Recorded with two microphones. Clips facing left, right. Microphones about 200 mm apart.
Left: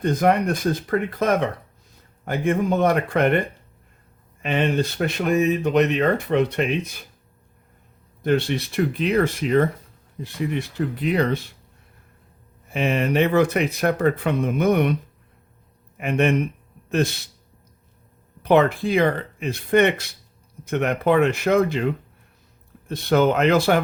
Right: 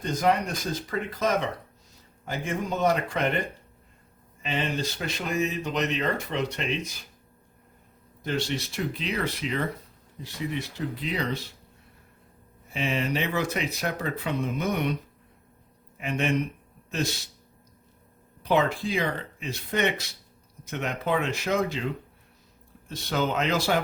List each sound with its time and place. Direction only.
0.0 s speech: 55° left (ahead or behind)
4.4 s speech: 60° left (ahead or behind)
8.2 s speech: 60° left (ahead or behind)
12.7 s speech: 55° left (ahead or behind)
16.0 s speech: 55° left (ahead or behind)
18.4 s speech: 55° left (ahead or behind)
22.9 s speech: 55° left (ahead or behind)